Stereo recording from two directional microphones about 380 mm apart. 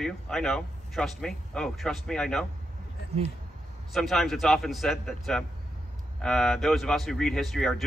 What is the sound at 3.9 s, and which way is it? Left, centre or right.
A man's voice, centre.